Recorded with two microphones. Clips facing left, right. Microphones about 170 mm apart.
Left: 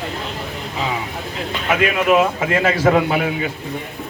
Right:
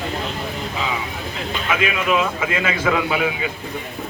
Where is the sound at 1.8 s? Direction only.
45° left (ahead or behind).